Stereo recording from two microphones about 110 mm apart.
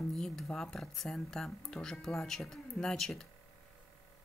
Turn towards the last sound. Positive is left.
turn(degrees=0)  # may be behind; listen again after turning